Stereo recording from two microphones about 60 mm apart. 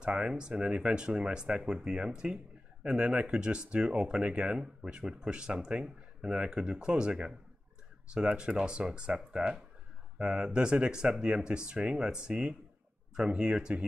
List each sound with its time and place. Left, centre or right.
0.0 s speech: centre